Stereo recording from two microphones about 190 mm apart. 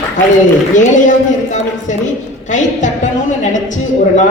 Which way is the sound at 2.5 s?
40° left (ahead or behind).